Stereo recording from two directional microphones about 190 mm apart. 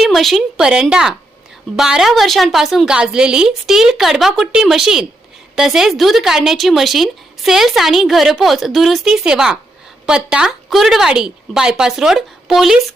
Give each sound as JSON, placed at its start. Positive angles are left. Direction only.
{"t": 0.0, "sound": "a woman's voice", "side_deg": 0}